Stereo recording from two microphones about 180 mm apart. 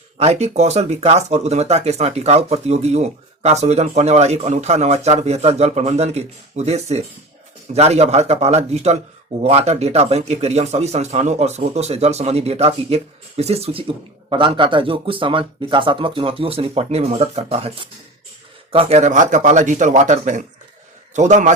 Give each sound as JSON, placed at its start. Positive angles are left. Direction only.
{"t": 0.2, "sound": "a man's voice", "side_deg": -35}